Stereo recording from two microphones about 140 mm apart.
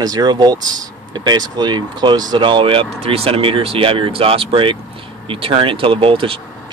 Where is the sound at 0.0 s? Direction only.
30° right (ahead or behind).